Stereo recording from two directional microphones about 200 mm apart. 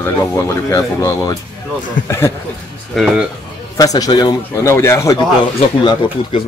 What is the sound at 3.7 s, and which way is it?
Speech, 20° left (ahead or behind).